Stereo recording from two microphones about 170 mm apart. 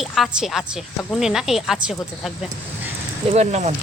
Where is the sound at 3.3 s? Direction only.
40° right (ahead or behind).